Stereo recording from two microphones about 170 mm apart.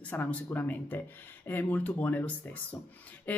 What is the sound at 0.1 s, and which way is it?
Speech, 10° left (ahead or behind).